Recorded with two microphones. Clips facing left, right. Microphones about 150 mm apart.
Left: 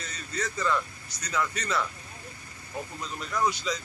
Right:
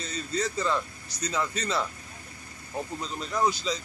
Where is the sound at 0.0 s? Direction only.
30° right (ahead or behind).